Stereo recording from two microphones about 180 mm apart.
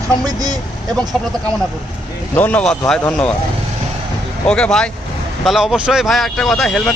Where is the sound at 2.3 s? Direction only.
10° left (ahead or behind).